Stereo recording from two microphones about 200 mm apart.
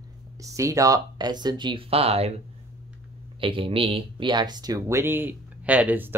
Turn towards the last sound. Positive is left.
turn(degrees=-10)  # may be behind; listen again after turning